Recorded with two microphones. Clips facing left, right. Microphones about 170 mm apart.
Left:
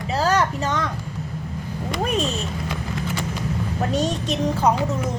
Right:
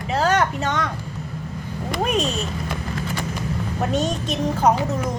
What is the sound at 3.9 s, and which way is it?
Speech, 35° left (ahead or behind).